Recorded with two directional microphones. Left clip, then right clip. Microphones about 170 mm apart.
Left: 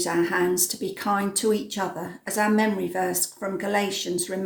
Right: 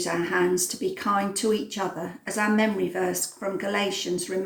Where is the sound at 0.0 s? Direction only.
45° left (ahead or behind).